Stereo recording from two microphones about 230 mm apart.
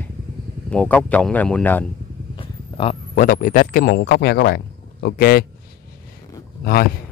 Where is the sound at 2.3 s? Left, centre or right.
Left.